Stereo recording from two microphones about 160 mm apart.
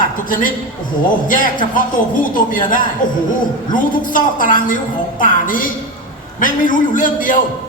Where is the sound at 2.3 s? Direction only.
60° left (ahead or behind).